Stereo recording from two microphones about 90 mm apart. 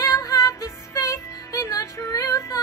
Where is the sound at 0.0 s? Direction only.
40° left (ahead or behind).